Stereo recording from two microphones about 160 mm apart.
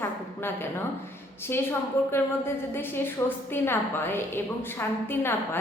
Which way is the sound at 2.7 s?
15° left (ahead or behind).